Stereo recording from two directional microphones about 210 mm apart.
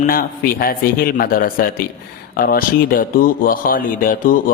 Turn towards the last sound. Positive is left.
turn(degrees=40)  # may be behind; listen again after turning